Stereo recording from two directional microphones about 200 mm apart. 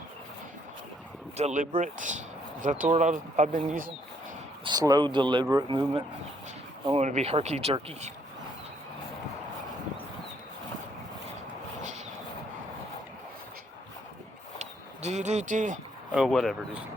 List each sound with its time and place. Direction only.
1.4 s speech: 35° right (ahead or behind)
4.6 s speech: 20° right (ahead or behind)
6.9 s speech: 35° right (ahead or behind)
14.6 s a sound: 35° right (ahead or behind)
16.1 s speech: centre (ahead or behind)